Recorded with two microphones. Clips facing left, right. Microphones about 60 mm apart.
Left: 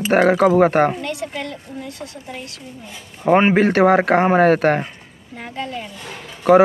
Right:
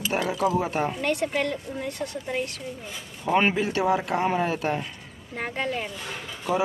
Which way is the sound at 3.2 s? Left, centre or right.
Left.